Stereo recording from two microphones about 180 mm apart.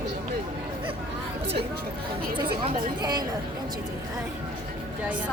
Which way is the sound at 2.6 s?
25° right (ahead or behind).